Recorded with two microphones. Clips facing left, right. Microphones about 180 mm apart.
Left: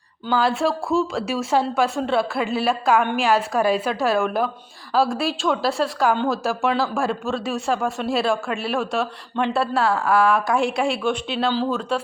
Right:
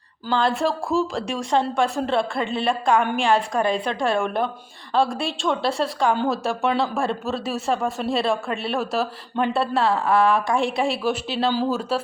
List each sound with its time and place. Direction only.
0.3 s speech: 5° left (ahead or behind)